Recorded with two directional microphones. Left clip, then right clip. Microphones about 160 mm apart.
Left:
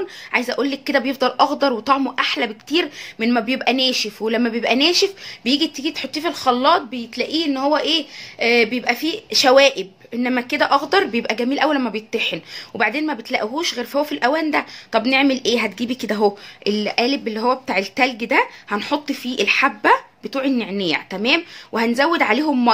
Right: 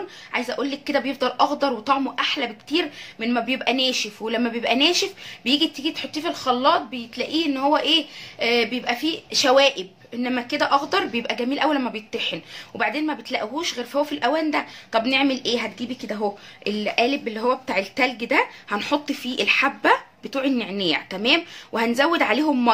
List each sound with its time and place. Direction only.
0.3 s speech: 40° left (ahead or behind)
15.9 s speech: 55° left (ahead or behind)
16.6 s speech: 35° left (ahead or behind)